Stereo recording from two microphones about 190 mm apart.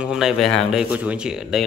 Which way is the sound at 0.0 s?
5° right (ahead or behind).